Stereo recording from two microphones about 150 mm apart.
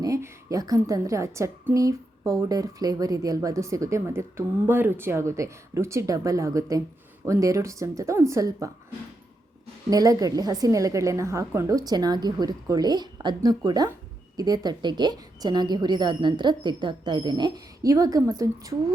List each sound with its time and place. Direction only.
0.0 s a woman's voice: 20° right (ahead or behind)
9.9 s a woman's voice: 25° right (ahead or behind)